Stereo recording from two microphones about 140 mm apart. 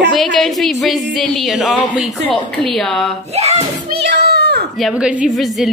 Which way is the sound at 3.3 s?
50° right (ahead or behind).